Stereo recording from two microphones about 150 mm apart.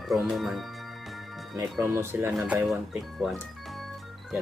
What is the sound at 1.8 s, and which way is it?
Speech, 15° right (ahead or behind).